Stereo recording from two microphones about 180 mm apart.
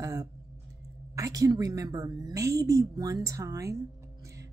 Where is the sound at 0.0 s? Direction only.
20° right (ahead or behind).